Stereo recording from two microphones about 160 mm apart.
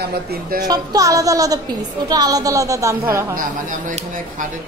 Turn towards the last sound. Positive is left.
turn(degrees=-55)  # may be behind; listen again after turning